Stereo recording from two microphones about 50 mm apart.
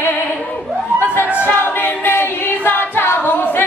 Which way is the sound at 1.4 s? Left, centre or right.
Left.